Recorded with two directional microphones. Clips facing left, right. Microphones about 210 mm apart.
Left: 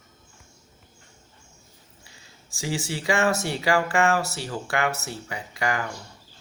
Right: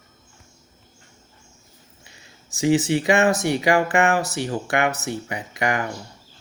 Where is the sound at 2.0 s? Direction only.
20° right (ahead or behind).